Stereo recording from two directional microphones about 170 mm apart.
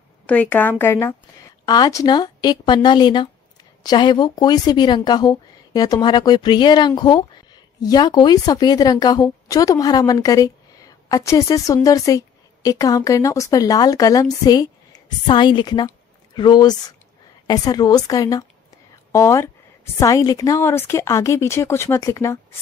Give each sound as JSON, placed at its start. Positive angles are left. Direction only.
{"t": 0.3, "sound": "a woman's voice", "side_deg": 10}